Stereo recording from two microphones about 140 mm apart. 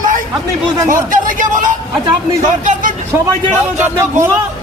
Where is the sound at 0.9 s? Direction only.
70° right (ahead or behind).